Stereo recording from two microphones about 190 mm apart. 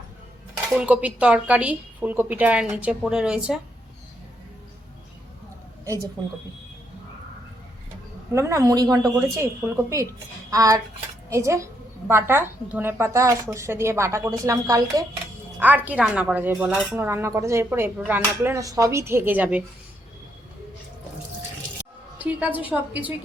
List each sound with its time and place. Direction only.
0.7 s a woman's voice: 5° right (ahead or behind)
8.3 s a woman's voice: 15° right (ahead or behind)
22.2 s a woman's voice: 10° right (ahead or behind)